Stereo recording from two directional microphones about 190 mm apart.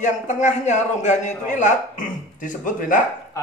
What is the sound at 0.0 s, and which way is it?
A man's voice, 40° left (ahead or behind).